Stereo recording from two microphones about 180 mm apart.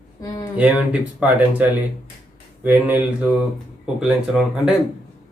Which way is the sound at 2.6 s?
10° right (ahead or behind).